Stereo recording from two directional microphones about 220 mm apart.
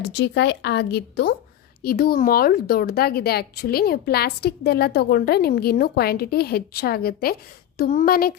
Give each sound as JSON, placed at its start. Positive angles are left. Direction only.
{"t": 0.0, "sound": "a woman's voice", "side_deg": 50}